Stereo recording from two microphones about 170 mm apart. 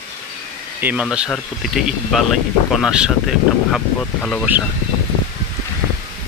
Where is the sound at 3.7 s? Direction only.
10° left (ahead or behind).